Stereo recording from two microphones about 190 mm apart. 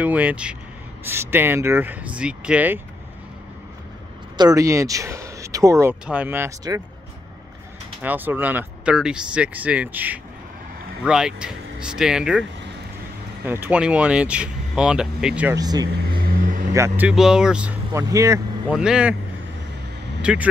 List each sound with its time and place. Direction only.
0.0 s speech: 10° right (ahead or behind)
4.4 s speech: 20° right (ahead or behind)
8.0 s speech: 10° right (ahead or behind)
13.5 s speech: 10° right (ahead or behind)
15.5 s speech: 20° right (ahead or behind)
16.1 s vehicle: 50° right (ahead or behind)
16.7 s speech: 10° right (ahead or behind)
18.1 s speech: 15° right (ahead or behind)
18.7 s speech: 5° right (ahead or behind)
20.2 s a sound: 5° right (ahead or behind)